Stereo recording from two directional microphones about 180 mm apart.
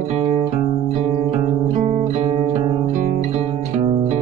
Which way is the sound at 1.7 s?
35° right (ahead or behind).